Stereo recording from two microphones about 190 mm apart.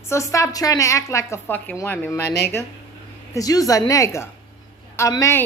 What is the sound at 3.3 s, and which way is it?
A woman's voice, 20° left (ahead or behind).